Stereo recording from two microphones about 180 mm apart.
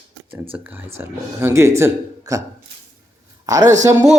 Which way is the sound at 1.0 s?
15° right (ahead or behind).